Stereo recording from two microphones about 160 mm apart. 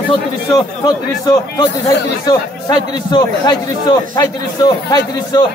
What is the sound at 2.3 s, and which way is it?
A man's voice, 25° left (ahead or behind).